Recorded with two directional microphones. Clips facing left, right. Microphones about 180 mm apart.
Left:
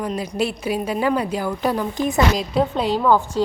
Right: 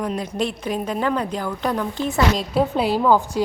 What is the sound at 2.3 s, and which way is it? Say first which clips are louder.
A woman's voice: even; 5° right (ahead or behind).